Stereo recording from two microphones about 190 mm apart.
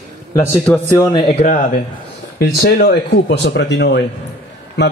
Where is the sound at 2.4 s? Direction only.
55° left (ahead or behind).